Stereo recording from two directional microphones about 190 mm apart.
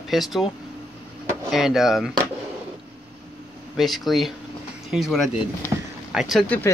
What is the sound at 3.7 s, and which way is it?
Speech, centre (ahead or behind).